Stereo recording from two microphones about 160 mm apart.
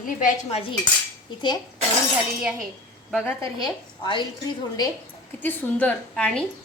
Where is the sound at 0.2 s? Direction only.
55° left (ahead or behind).